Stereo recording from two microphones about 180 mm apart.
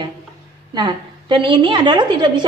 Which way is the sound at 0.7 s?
25° right (ahead or behind).